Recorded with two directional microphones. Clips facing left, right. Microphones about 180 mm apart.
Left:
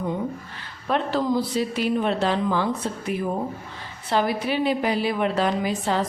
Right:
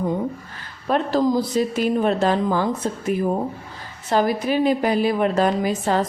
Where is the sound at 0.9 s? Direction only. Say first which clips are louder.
Right 4 dB; 40° right (ahead or behind).